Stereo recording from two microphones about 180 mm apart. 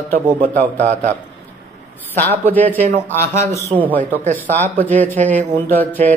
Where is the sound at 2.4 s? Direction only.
10° left (ahead or behind).